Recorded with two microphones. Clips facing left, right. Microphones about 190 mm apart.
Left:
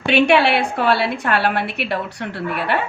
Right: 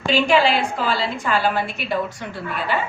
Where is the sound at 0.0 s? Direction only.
65° left (ahead or behind).